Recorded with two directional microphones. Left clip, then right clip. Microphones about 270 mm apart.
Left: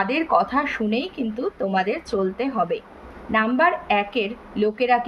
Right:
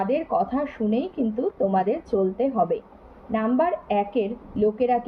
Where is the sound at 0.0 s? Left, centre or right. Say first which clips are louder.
Left 3 dB; centre.